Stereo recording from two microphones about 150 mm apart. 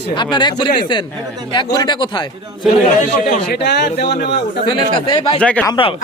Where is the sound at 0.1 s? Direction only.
30° left (ahead or behind).